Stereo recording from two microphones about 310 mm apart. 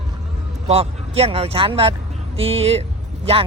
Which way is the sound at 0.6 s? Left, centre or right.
Centre.